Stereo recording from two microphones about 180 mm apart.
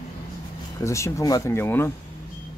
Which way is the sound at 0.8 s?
15° left (ahead or behind).